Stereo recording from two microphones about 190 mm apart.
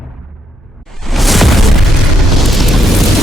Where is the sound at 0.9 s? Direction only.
Centre (ahead or behind).